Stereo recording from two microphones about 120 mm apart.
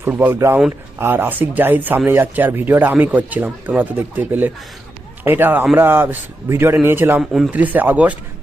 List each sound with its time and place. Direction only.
0.0 s a man's voice: 15° right (ahead or behind)
7.2 s speech: 5° right (ahead or behind)
7.6 s speech: 15° right (ahead or behind)